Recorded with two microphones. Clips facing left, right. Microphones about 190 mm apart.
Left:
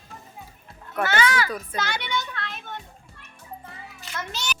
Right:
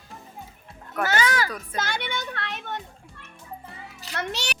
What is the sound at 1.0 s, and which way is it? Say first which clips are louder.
A child's voice: left 1 dB; 40° right (ahead or behind).